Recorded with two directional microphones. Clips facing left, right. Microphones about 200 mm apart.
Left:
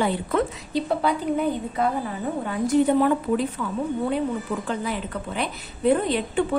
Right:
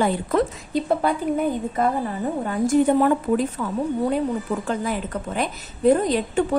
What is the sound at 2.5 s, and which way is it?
Speech, 45° right (ahead or behind).